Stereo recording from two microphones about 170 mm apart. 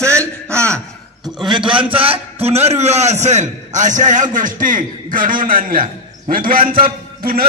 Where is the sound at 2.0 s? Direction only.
35° right (ahead or behind); by 7.4 s 60° right (ahead or behind).